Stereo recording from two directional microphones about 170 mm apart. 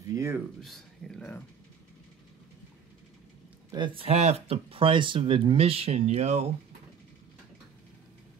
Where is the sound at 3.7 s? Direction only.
30° right (ahead or behind).